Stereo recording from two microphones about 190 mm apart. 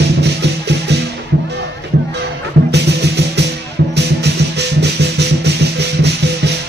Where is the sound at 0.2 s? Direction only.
65° right (ahead or behind).